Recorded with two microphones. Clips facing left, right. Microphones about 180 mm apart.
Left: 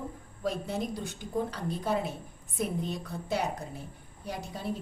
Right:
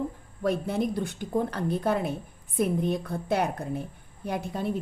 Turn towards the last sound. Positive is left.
turn(degrees=-55)  # may be behind; listen again after turning